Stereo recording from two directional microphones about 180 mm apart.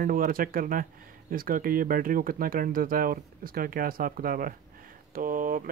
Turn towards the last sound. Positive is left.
turn(degrees=-50)  # may be behind; listen again after turning